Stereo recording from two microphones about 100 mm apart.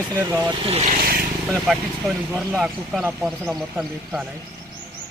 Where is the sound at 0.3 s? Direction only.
20° right (ahead or behind).